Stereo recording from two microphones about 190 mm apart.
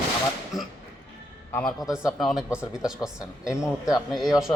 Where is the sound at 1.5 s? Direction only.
5° left (ahead or behind).